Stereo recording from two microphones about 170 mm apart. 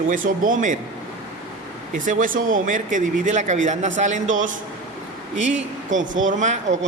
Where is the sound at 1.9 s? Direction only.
50° right (ahead or behind).